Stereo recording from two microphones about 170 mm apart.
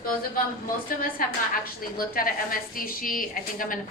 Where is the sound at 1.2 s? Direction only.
55° left (ahead or behind).